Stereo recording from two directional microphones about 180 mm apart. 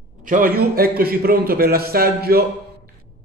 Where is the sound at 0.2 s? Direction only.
50° right (ahead or behind).